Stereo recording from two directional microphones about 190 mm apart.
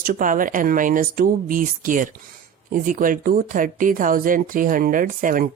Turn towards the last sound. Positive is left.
turn(degrees=-45)  # may be behind; listen again after turning